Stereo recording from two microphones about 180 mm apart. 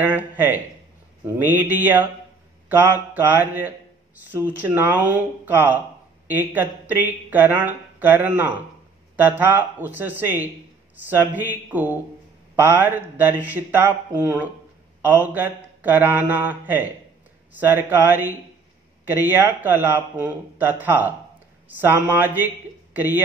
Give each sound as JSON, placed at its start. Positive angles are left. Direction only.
{"t": 0.0, "sound": "speech", "side_deg": -10}